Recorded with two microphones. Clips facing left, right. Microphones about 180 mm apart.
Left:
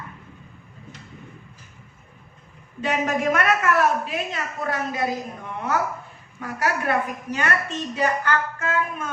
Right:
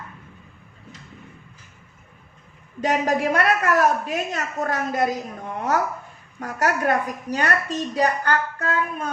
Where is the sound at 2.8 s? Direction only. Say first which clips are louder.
Right 2 dB; 35° right (ahead or behind).